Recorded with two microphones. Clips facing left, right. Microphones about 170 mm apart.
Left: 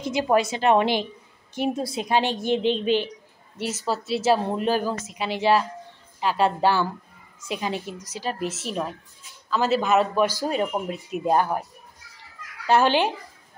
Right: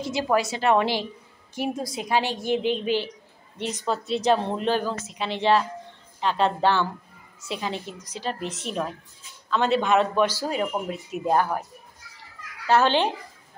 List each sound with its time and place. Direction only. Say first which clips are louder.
0.1 s a woman's voice: left 3 dB; 20° left (ahead or behind)
3.5 s a woman's voice: even; 5° left (ahead or behind)
12.6 s a woman's voice: left 1 dB; 10° left (ahead or behind)